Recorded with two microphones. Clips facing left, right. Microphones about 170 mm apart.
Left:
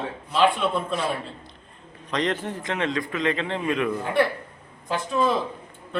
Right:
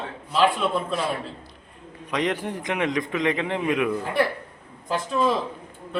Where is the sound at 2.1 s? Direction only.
10° right (ahead or behind).